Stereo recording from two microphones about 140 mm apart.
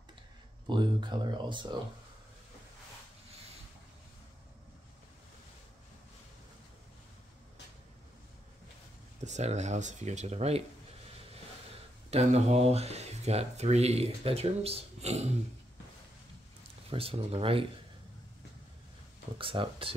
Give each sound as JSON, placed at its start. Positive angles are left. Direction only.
{"t": 0.7, "sound": "speech", "side_deg": -35}
{"t": 9.2, "sound": "speech", "side_deg": -55}
{"t": 12.1, "sound": "speech", "side_deg": -50}
{"t": 16.9, "sound": "speech", "side_deg": -45}
{"t": 19.3, "sound": "speech", "side_deg": -35}